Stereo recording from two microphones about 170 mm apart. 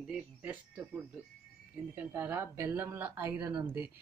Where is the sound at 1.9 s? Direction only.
10° right (ahead or behind).